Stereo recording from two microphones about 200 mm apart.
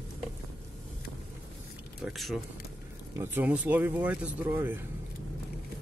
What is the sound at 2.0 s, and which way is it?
Speech, centre (ahead or behind).